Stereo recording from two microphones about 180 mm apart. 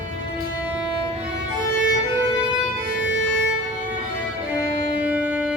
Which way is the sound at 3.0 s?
85° left.